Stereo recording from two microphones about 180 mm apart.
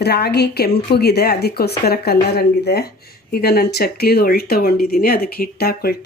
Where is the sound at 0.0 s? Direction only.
65° left (ahead or behind).